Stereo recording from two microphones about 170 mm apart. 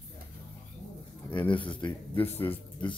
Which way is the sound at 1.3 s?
30° left (ahead or behind).